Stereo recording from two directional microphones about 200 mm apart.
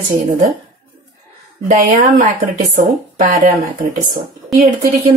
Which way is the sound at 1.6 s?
40° right (ahead or behind).